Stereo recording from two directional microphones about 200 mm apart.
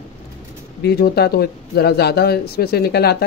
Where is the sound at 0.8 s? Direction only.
55° left (ahead or behind).